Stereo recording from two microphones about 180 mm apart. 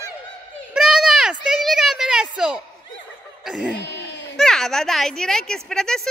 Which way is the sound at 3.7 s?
75° left (ahead or behind).